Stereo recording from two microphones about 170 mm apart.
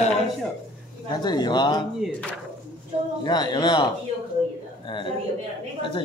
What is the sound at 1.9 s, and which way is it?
Speech, centre (ahead or behind).